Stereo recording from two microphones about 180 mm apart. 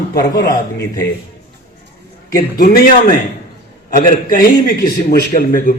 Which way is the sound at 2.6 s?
55° left (ahead or behind).